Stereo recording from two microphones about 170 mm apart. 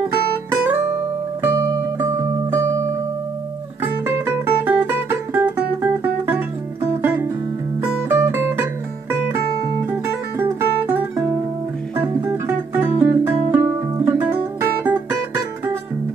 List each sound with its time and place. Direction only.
0.5 s music: 10° right (ahead or behind)
3.8 s music: 15° right (ahead or behind)